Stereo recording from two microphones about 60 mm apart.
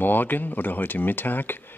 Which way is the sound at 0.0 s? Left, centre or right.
Left.